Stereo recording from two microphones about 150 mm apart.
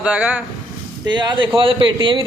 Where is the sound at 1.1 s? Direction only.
30° right (ahead or behind).